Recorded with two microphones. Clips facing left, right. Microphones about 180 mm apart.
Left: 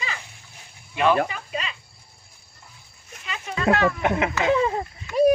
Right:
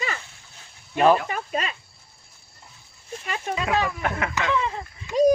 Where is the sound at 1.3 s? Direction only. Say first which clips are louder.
Right 4 dB; 45° right (ahead or behind).